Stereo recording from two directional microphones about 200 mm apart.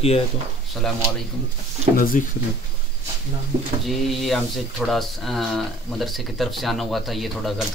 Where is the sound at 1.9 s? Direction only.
45° left (ahead or behind).